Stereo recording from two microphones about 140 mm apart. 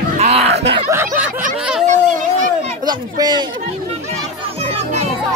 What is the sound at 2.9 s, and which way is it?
Speech, 30° right (ahead or behind).